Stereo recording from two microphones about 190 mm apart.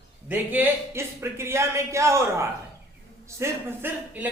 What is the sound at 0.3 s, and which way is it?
A woman's voice, 10° right (ahead or behind).